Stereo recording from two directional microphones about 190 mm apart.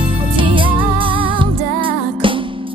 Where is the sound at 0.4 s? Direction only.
25° right (ahead or behind).